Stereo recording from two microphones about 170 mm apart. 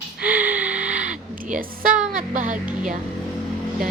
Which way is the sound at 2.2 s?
50° right (ahead or behind).